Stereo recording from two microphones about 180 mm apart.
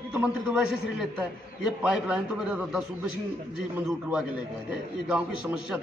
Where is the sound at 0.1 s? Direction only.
5° right (ahead or behind).